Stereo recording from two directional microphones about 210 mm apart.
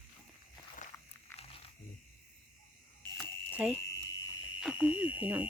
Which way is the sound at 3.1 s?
10° left (ahead or behind).